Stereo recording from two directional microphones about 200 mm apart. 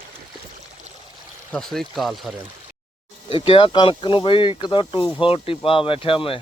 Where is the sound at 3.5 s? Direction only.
25° left (ahead or behind).